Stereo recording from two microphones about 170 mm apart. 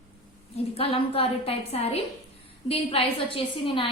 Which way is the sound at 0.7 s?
35° left (ahead or behind).